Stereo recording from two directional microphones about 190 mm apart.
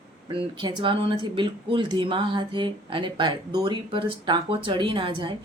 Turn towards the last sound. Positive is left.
turn(degrees=-25)  # may be behind; listen again after turning